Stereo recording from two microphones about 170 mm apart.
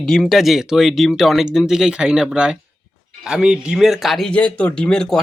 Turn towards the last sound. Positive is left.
turn(degrees=5)  # may be behind; listen again after turning